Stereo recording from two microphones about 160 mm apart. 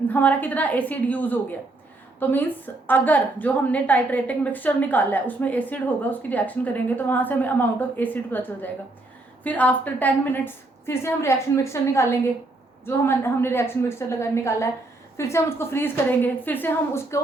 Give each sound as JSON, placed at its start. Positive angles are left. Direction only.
{"t": 0.1, "sound": "a woman's voice", "side_deg": 10}